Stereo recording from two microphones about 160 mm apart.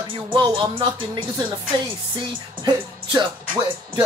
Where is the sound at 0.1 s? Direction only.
30° right (ahead or behind).